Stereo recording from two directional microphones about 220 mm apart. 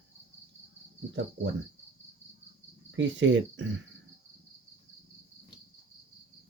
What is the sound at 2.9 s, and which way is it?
Speech, 60° right (ahead or behind).